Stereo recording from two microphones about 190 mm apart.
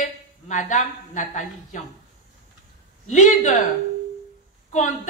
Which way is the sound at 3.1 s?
40° left (ahead or behind).